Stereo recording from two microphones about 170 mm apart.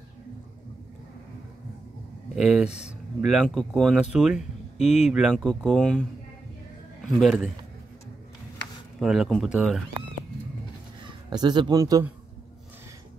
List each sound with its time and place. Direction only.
2.3 s speech: 5° right (ahead or behind)
4.7 s speech: 40° left (ahead or behind)
5.1 s speech: centre (ahead or behind)
7.2 s speech: centre (ahead or behind)
9.0 s speech: centre (ahead or behind)
11.1 s speech: 25° right (ahead or behind)